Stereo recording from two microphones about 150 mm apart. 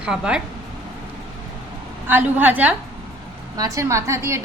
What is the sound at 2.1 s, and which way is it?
Speech, 10° right (ahead or behind).